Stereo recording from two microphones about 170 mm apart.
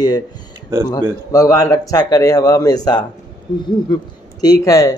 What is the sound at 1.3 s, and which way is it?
A man's voice, 20° left (ahead or behind).